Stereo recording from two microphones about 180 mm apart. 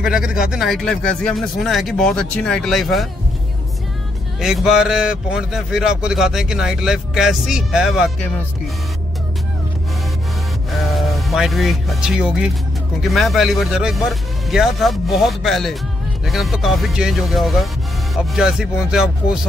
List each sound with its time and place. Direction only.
0.0 s a man's voice: 5° right (ahead or behind)
4.4 s a man's voice: centre (ahead or behind)
10.7 s a man's voice: centre (ahead or behind)